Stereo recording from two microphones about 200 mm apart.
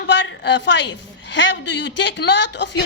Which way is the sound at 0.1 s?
60° left (ahead or behind).